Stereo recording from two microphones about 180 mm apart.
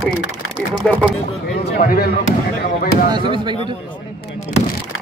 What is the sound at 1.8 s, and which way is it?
Speech, 55° left (ahead or behind).